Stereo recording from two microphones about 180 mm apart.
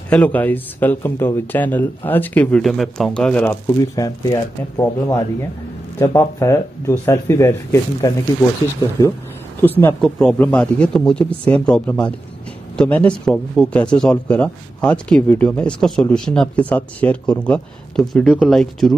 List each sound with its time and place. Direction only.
0.1 s speech: 10° left (ahead or behind)
9.6 s speech: 10° left (ahead or behind)